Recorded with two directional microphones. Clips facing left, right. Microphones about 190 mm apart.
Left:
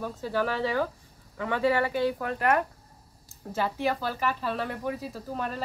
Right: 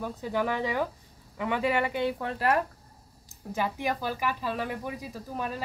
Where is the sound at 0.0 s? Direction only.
15° right (ahead or behind).